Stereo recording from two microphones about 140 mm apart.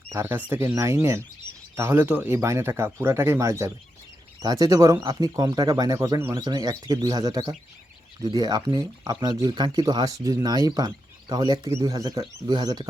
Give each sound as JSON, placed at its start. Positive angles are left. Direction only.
{"t": 0.1, "sound": "speech", "side_deg": -15}
{"t": 6.3, "sound": "speech", "side_deg": -30}